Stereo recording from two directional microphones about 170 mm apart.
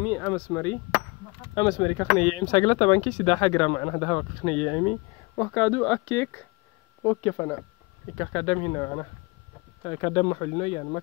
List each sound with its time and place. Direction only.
0.1 s speech: 15° left (ahead or behind)
1.5 s speech: 25° left (ahead or behind)
2.3 s speech: 30° left (ahead or behind)
5.4 s speech: 10° left (ahead or behind); by 11.0 s 30° left (ahead or behind)